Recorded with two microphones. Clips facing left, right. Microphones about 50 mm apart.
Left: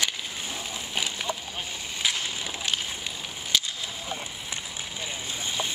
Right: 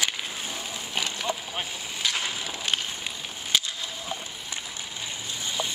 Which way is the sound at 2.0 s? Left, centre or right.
Centre.